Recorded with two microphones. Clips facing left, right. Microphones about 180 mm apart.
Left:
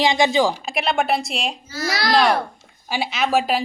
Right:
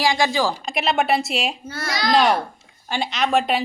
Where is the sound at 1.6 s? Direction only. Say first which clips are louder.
Left 3 dB; 60° right (ahead or behind).